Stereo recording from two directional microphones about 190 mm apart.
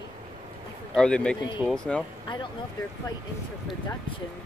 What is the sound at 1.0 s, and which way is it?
Speech, 5° left (ahead or behind).